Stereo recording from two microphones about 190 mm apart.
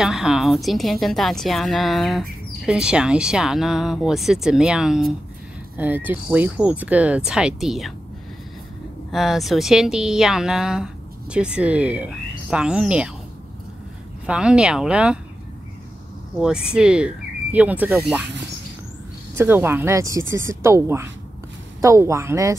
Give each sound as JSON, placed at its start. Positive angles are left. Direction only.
{"t": 0.0, "sound": "speech", "side_deg": 0}
{"t": 9.1, "sound": "speech", "side_deg": 0}
{"t": 14.2, "sound": "speech", "side_deg": -5}
{"t": 16.3, "sound": "speech", "side_deg": -5}
{"t": 19.3, "sound": "speech", "side_deg": -10}